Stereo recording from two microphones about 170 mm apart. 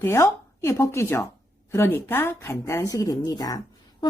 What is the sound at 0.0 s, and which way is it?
Speech, 15° left (ahead or behind).